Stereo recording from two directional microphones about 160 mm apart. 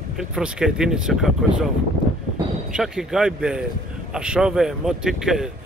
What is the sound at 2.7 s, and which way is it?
Speech, 5° right (ahead or behind).